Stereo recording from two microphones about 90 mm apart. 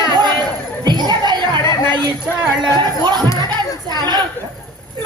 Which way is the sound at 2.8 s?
55° right (ahead or behind).